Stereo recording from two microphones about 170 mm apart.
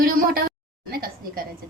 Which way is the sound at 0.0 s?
60° right (ahead or behind).